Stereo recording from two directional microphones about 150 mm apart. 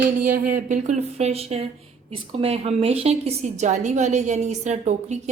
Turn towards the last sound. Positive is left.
turn(degrees=-50)  # may be behind; listen again after turning